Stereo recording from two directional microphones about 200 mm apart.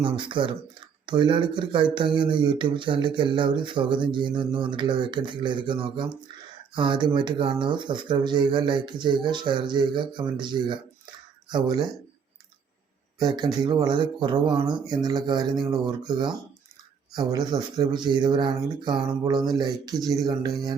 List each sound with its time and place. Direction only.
0.0 s speech: 25° right (ahead or behind)
13.1 s speech: 20° right (ahead or behind)